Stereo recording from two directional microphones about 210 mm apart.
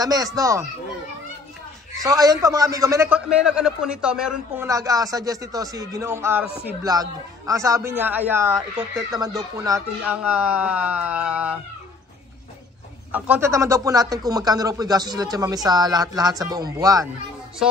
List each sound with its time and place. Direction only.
0.0 s speech: 15° right (ahead or behind)
2.0 s speech: 15° right (ahead or behind)
4.6 s speech: 15° right (ahead or behind)
13.1 s speech: 10° right (ahead or behind)
17.6 s music: centre (ahead or behind)